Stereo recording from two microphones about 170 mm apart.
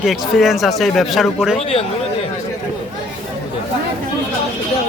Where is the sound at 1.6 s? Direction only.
35° left (ahead or behind).